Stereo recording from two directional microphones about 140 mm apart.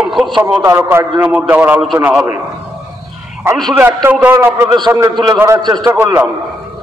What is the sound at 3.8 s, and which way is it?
A man's voice, 15° right (ahead or behind).